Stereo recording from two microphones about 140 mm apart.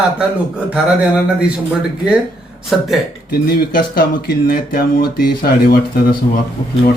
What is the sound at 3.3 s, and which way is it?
Speech, 90° left.